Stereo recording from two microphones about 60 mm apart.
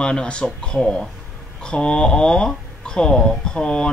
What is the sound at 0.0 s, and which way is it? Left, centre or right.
Speech, centre.